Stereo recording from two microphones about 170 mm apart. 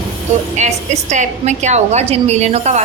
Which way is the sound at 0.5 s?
45° right (ahead or behind).